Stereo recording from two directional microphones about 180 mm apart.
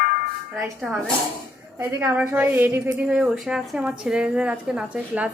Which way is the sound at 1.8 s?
15° right (ahead or behind).